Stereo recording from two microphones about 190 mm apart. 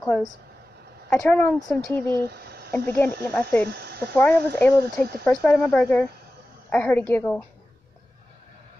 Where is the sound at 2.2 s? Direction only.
55° right (ahead or behind).